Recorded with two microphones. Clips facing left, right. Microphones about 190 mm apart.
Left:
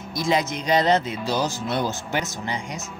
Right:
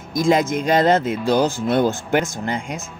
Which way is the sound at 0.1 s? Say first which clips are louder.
Right 6 dB; 50° right (ahead or behind).